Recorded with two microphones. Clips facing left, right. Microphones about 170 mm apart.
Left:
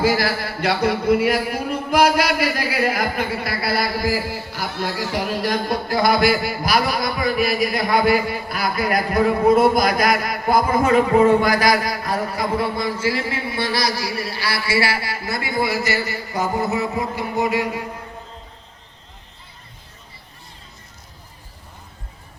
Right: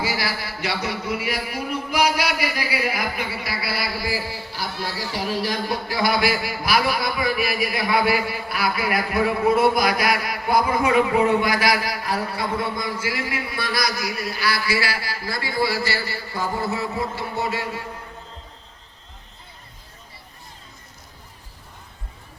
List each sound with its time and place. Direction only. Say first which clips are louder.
0.0 s speech: left 7 dB; 50° left (ahead or behind)
12.6 s a man's voice: left 5 dB; 30° left (ahead or behind)